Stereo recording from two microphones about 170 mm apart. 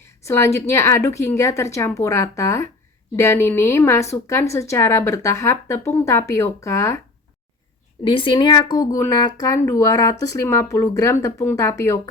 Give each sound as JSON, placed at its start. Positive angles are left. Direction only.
{"t": 0.3, "sound": "a woman's voice", "side_deg": 15}
{"t": 8.0, "sound": "speech", "side_deg": 30}